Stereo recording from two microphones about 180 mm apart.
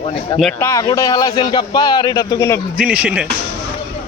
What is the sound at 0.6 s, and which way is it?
Speech, 15° left (ahead or behind).